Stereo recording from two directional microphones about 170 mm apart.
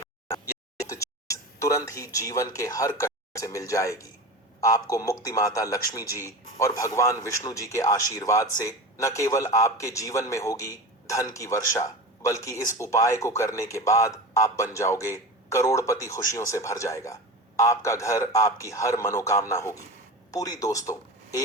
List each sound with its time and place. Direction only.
0.9 s a man's voice: 20° left (ahead or behind)